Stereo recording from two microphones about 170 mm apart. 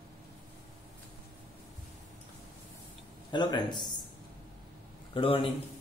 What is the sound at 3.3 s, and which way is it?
Speech, 25° left (ahead or behind).